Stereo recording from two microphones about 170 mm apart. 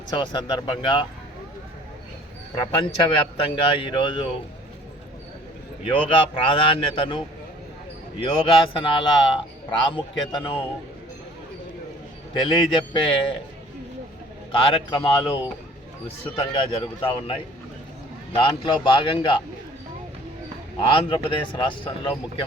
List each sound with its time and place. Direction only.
0.2 s a man's voice: 30° left (ahead or behind)
2.6 s a man's voice: 30° left (ahead or behind)
5.8 s a man's voice: 30° left (ahead or behind)
8.2 s a man's voice: 30° left (ahead or behind)
12.3 s a man's voice: 30° left (ahead or behind)
14.5 s a man's voice: 30° left (ahead or behind)
20.8 s speech: 30° left (ahead or behind)